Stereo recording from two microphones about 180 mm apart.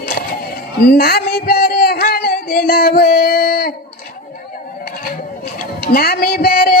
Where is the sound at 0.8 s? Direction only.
60° left (ahead or behind).